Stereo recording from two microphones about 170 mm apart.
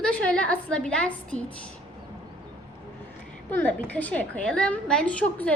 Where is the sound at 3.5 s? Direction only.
10° left (ahead or behind).